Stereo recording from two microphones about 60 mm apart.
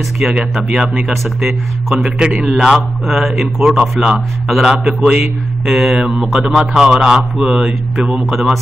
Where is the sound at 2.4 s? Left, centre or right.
Centre.